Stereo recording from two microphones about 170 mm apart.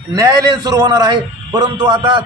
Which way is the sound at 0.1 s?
20° right (ahead or behind).